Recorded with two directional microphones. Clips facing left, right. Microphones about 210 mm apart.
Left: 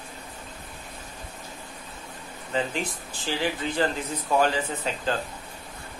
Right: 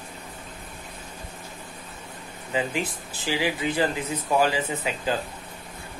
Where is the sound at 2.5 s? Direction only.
10° right (ahead or behind).